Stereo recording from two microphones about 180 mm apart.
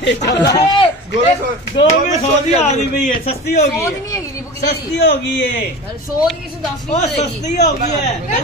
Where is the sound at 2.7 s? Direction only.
40° left (ahead or behind).